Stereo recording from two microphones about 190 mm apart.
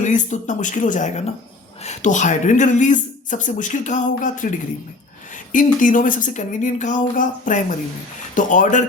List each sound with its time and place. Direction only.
0.0 s a woman's voice: 40° left (ahead or behind)
5.5 s a woman's voice: 45° left (ahead or behind)